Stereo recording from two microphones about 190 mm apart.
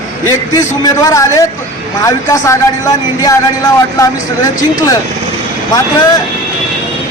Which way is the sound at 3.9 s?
20° left (ahead or behind).